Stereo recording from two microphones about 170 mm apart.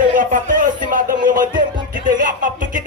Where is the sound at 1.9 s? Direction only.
50° right (ahead or behind).